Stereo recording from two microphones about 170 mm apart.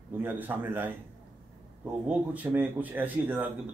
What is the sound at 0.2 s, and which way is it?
A man's voice, 10° right (ahead or behind).